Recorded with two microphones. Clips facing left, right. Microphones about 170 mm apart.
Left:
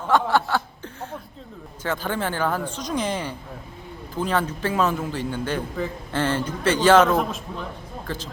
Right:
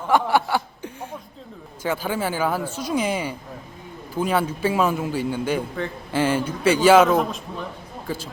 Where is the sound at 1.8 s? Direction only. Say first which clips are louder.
Right 2 dB; 10° right (ahead or behind).